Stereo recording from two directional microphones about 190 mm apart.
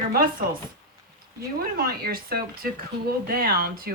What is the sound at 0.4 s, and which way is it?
Speech, 50° right (ahead or behind).